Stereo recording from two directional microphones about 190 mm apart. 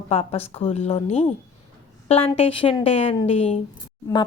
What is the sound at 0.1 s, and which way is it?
A woman's voice, 30° left (ahead or behind).